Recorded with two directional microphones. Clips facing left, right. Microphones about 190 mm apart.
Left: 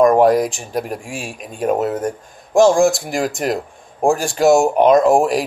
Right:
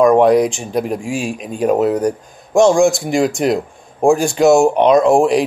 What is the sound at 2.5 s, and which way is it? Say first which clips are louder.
Speech: right 1 dB; centre (ahead or behind).